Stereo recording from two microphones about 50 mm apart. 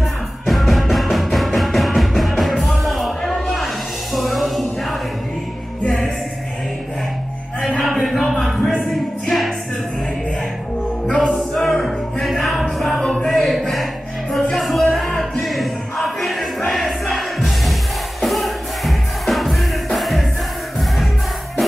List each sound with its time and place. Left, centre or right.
0.5 s music: centre
7.8 s music: centre
11.1 s music: centre
13.0 s music: centre
13.3 s a sound: centre
14.3 s music: centre